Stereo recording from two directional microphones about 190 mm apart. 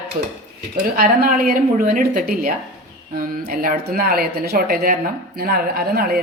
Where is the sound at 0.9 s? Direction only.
45° right (ahead or behind).